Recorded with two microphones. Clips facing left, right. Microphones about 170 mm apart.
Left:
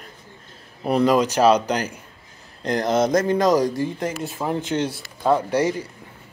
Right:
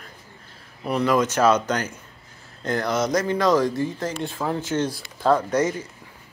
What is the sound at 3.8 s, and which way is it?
Speech, 15° left (ahead or behind).